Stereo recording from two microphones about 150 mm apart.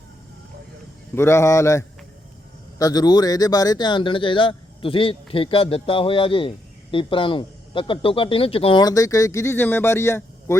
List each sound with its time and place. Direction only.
1.1 s speech: 15° left (ahead or behind); by 8.8 s 40° left (ahead or behind)
8.8 s speech: 25° left (ahead or behind)